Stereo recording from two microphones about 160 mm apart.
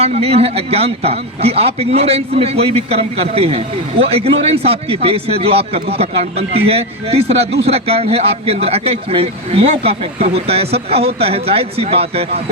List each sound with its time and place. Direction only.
0.0 s a man's voice: 40° right (ahead or behind)